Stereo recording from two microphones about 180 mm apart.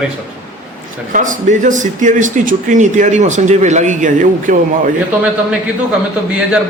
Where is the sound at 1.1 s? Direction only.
45° right (ahead or behind).